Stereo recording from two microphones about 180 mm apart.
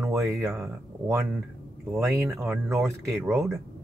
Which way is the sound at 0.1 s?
15° right (ahead or behind).